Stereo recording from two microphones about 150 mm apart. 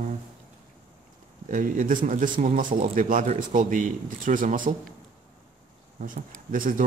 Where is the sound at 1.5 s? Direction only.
60° right (ahead or behind).